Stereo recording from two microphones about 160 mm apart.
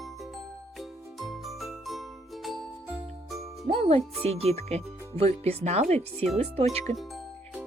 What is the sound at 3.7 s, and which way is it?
Speech, 40° right (ahead or behind).